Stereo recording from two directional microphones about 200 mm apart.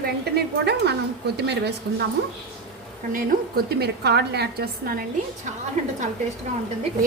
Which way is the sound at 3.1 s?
45° right (ahead or behind).